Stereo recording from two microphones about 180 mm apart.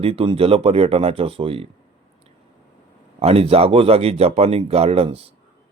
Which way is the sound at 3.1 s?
35° right (ahead or behind).